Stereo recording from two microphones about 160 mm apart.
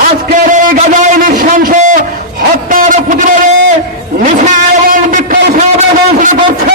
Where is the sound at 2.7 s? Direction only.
55° right (ahead or behind).